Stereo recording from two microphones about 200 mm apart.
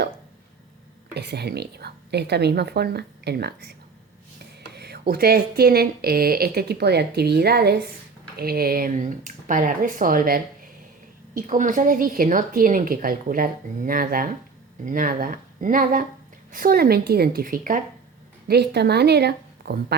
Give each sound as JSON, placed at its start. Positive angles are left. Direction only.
{"t": 1.1, "sound": "a woman's voice", "side_deg": -55}
{"t": 18.4, "sound": "a woman's voice", "side_deg": -55}